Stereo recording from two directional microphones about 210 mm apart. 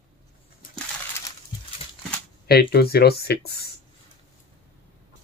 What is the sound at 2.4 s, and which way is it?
Speech, 50° left (ahead or behind).